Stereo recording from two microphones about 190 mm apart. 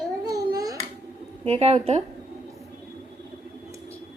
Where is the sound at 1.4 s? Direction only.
35° right (ahead or behind).